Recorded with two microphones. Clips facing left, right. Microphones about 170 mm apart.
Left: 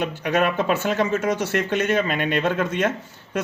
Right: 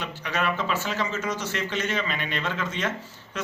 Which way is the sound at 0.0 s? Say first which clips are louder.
Left 7 dB; 50° left (ahead or behind).